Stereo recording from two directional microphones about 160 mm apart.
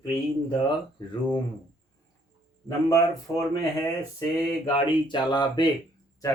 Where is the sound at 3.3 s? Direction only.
Centre (ahead or behind).